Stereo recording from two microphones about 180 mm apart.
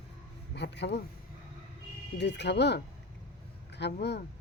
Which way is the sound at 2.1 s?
70° left (ahead or behind).